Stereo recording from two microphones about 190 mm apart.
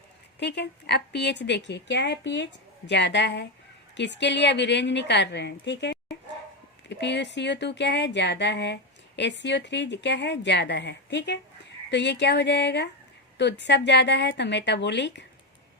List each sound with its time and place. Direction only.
0.3 s a woman's voice: 60° left (ahead or behind)